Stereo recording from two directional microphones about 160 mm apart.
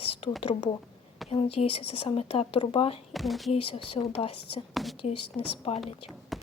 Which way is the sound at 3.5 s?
35° left (ahead or behind).